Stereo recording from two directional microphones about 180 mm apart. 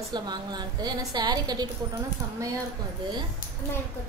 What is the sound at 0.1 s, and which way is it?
A woman's voice, 25° right (ahead or behind).